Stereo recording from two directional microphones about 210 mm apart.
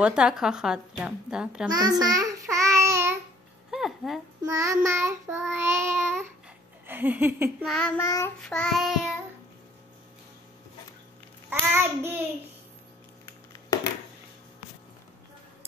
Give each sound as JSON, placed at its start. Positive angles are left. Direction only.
{"t": 0.0, "sound": "a woman's voice", "side_deg": -5}
{"t": 1.7, "sound": "child singing", "side_deg": -15}
{"t": 3.7, "sound": "a sound", "side_deg": 0}
{"t": 4.5, "sound": "child singing", "side_deg": -15}
{"t": 6.9, "sound": "a sound", "side_deg": -10}
{"t": 7.6, "sound": "a woman's voice", "side_deg": 0}
{"t": 8.0, "sound": "child singing", "side_deg": 15}
{"t": 8.4, "sound": "a woman's voice", "side_deg": 5}
{"t": 11.7, "sound": "child singing", "side_deg": -10}